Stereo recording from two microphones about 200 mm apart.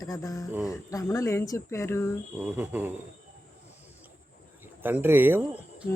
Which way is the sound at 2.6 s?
10° right (ahead or behind).